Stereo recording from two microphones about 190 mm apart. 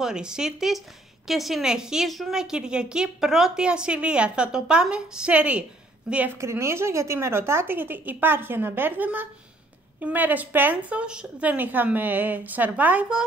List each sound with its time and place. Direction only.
0.0 s a woman's voice: 5° right (ahead or behind)